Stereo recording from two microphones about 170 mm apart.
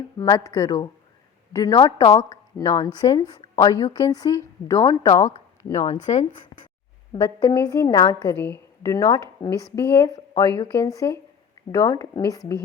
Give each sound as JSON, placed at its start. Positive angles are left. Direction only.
{"t": 0.2, "sound": "a woman's voice", "side_deg": 20}
{"t": 5.2, "sound": "a sound", "side_deg": 20}
{"t": 5.8, "sound": "speech", "side_deg": 40}
{"t": 7.1, "sound": "a woman's voice", "side_deg": 20}